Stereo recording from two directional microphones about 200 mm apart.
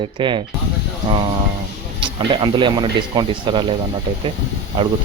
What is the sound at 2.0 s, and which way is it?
Speech, 25° right (ahead or behind).